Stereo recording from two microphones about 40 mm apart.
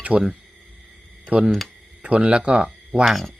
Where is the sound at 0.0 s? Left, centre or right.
Right.